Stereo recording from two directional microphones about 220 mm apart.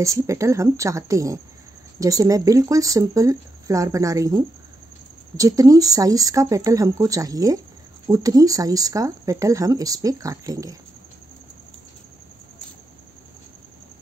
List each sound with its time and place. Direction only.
0.0 s speech: 15° right (ahead or behind)